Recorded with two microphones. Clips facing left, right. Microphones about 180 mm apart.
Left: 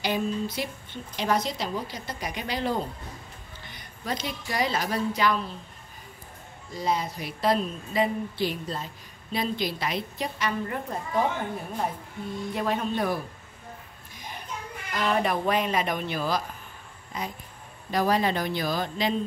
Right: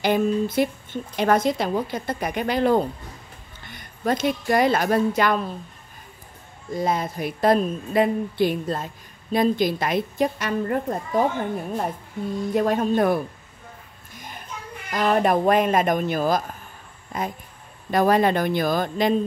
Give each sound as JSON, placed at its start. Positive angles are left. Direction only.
{"t": 0.0, "sound": "a woman's voice", "side_deg": -55}
{"t": 6.7, "sound": "speech", "side_deg": -55}
{"t": 12.5, "sound": "speech", "side_deg": -45}
{"t": 14.9, "sound": "speech", "side_deg": -45}